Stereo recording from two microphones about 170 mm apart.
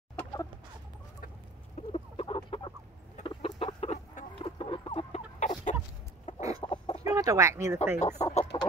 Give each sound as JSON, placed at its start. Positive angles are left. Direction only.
{"t": 0.1, "sound": "chicken", "side_deg": 15}
{"t": 1.8, "sound": "chicken", "side_deg": 35}
{"t": 4.4, "sound": "chicken", "side_deg": 30}
{"t": 5.4, "sound": "chicken", "side_deg": 45}
{"t": 6.6, "sound": "chicken", "side_deg": 30}
{"t": 7.2, "sound": "speech", "side_deg": -20}
{"t": 8.0, "sound": "speech", "side_deg": 40}